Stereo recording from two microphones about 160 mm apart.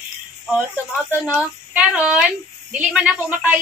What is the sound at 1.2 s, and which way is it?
A woman's voice, 5° right (ahead or behind).